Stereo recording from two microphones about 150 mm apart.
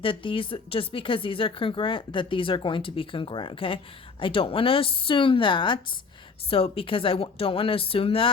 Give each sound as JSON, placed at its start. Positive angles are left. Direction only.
{"t": 0.0, "sound": "speech", "side_deg": 35}